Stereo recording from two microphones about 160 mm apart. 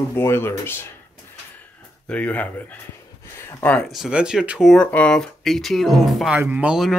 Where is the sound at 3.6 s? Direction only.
10° left (ahead or behind).